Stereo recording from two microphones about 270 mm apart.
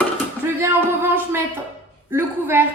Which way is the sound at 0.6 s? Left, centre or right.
Centre.